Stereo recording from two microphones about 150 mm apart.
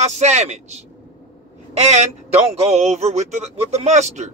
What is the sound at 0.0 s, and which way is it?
A man's voice, 50° right (ahead or behind).